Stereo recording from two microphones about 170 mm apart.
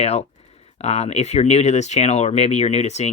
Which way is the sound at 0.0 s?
40° left (ahead or behind).